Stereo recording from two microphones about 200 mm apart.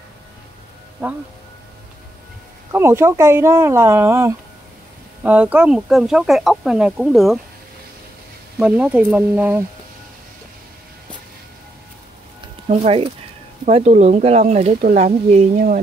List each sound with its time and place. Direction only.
2.7 s speech: 10° right (ahead or behind)
8.5 s speech: 5° right (ahead or behind)
12.6 s speech: 30° right (ahead or behind)